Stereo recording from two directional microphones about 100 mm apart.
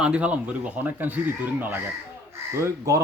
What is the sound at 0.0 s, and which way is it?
Speech, 10° right (ahead or behind).